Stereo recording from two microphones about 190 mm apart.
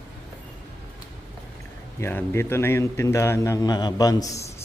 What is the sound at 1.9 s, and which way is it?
A man's voice, 15° left (ahead or behind).